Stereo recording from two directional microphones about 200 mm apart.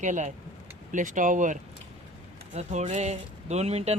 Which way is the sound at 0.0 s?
35° right (ahead or behind).